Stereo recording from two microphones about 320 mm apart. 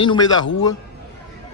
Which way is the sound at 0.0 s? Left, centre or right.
Centre.